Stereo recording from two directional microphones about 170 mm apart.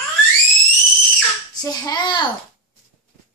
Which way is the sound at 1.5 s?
20° left (ahead or behind).